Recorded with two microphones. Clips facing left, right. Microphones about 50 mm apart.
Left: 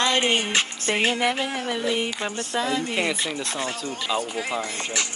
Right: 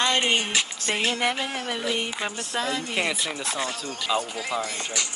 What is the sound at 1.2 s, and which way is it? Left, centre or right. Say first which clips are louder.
Speech: left 2 dB; centre.